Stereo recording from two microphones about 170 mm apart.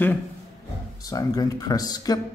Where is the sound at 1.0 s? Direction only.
20° left (ahead or behind).